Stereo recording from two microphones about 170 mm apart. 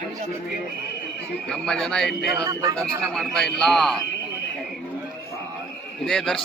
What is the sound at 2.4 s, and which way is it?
Speech, 20° right (ahead or behind).